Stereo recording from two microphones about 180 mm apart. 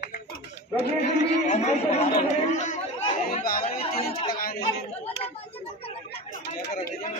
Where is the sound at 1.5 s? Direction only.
40° left (ahead or behind).